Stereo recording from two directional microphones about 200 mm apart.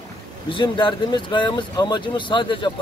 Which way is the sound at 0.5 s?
25° left (ahead or behind).